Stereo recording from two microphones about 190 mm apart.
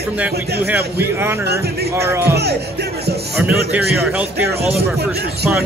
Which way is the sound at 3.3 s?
5° right (ahead or behind).